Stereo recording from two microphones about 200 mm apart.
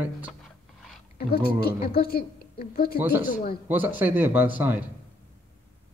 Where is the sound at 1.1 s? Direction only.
50° left (ahead or behind).